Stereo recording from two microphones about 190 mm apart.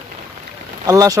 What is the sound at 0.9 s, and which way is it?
Speech, 20° right (ahead or behind).